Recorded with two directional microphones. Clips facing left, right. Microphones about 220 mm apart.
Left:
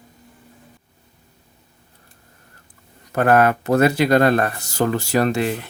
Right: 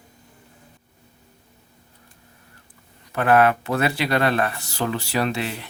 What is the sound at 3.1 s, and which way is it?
Speech, 45° left (ahead or behind).